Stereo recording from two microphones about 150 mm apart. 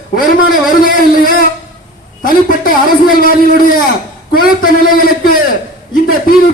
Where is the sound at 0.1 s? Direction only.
75° left (ahead or behind).